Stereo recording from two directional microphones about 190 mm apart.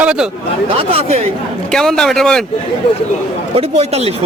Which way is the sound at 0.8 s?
30° right (ahead or behind).